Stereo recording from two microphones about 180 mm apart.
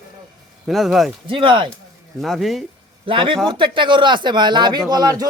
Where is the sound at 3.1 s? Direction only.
30° right (ahead or behind).